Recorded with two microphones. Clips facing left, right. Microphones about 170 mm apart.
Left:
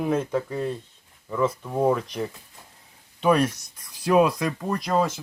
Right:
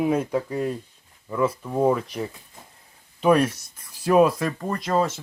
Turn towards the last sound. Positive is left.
turn(degrees=0)  # may be behind; listen again after turning